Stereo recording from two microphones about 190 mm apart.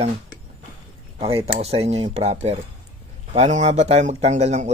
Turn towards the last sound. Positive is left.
turn(degrees=-35)  # may be behind; listen again after turning